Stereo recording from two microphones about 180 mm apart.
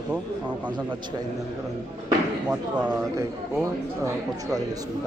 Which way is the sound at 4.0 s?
20° right (ahead or behind).